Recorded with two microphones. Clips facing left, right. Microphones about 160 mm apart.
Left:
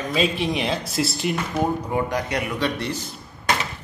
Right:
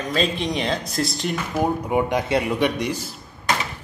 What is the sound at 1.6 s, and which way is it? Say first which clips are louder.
Speech: right 4 dB; 15° right (ahead or behind).